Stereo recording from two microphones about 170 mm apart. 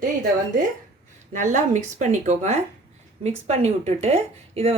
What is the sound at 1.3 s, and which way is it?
A woman's voice, 45° right (ahead or behind).